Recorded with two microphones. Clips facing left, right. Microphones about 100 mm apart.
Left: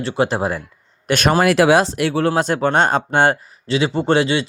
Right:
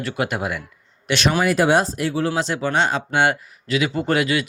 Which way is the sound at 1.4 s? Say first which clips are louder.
Left 4 dB; 85° left.